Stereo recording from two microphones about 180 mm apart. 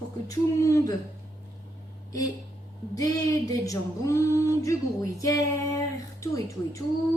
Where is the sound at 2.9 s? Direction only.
20° left (ahead or behind).